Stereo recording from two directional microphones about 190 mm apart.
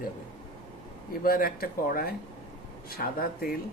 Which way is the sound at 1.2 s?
50° left (ahead or behind).